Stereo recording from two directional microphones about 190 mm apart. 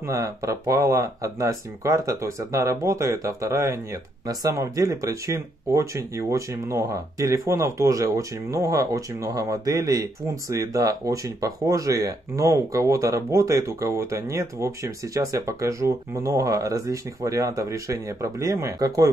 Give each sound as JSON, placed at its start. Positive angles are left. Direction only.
{"t": 0.0, "sound": "speech", "side_deg": -15}